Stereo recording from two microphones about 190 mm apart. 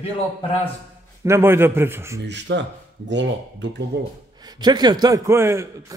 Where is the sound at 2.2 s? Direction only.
70° right (ahead or behind).